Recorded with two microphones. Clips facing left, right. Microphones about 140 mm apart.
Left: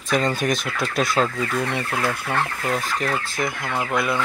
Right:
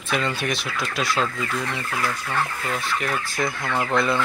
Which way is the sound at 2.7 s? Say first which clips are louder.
Left 2 dB; 40° left (ahead or behind).